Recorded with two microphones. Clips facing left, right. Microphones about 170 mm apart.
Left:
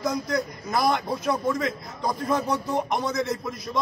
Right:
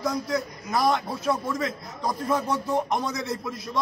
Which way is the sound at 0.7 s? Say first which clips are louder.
Even; centre (ahead or behind).